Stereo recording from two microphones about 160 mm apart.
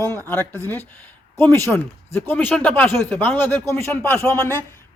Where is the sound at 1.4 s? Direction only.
15° left (ahead or behind).